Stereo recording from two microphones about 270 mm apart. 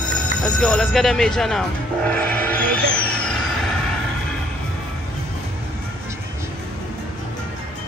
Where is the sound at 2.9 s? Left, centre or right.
Centre.